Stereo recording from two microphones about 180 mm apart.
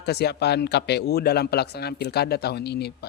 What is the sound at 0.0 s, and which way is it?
Speech, 65° left (ahead or behind).